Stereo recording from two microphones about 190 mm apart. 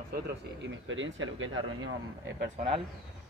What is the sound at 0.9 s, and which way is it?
Speech, 85° right.